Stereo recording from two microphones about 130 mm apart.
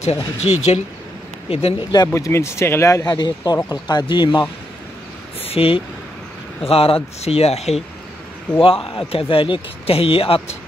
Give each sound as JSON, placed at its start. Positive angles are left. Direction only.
{"t": 0.0, "sound": "speech", "side_deg": 50}
{"t": 2.1, "sound": "speech", "side_deg": 20}
{"t": 5.4, "sound": "a sound", "side_deg": 50}
{"t": 6.6, "sound": "speech", "side_deg": 50}